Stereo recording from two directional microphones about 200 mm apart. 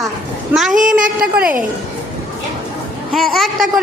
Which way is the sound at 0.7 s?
40° right (ahead or behind).